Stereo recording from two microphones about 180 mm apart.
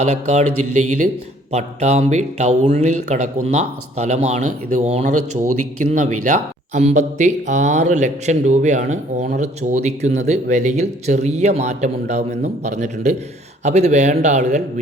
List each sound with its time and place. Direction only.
0.0 s speech: 40° right (ahead or behind)